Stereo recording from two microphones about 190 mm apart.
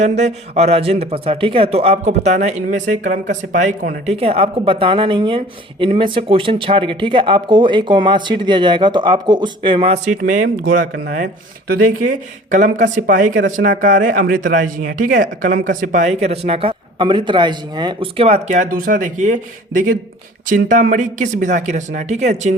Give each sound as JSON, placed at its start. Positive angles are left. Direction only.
{"t": 0.0, "sound": "speech", "side_deg": -35}
{"t": 10.3, "sound": "speech", "side_deg": -45}
{"t": 12.5, "sound": "speech", "side_deg": -40}